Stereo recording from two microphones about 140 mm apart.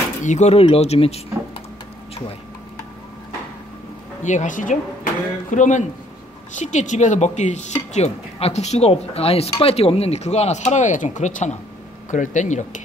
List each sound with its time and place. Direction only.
0.2 s speech: 55° left (ahead or behind)
4.2 s speech: 60° left (ahead or behind)